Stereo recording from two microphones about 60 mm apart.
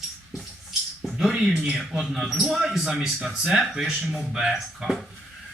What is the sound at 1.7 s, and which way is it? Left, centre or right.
Speech, centre.